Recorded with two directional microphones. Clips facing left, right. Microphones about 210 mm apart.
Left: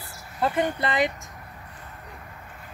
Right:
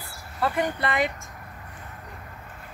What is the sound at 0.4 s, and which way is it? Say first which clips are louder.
Speech: left 1 dB; 20° left (ahead or behind).